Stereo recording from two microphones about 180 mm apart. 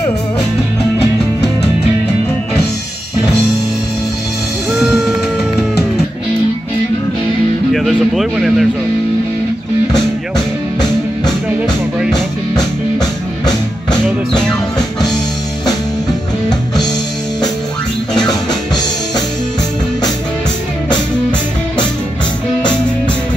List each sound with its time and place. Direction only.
7.7 s a sound: centre (ahead or behind)
12.1 s music: 20° left (ahead or behind)
18.1 s music: centre (ahead or behind)